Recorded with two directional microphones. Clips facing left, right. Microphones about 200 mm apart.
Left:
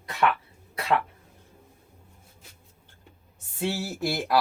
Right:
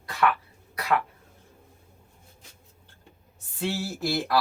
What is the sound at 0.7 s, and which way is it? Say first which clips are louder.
Throat clearing: left 1 dB; 25° left (ahead or behind).